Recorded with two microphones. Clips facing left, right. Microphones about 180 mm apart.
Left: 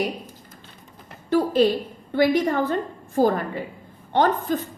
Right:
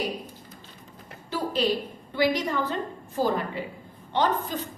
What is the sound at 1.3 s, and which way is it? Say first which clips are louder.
A woman's voice: left 7 dB; 50° left (ahead or behind).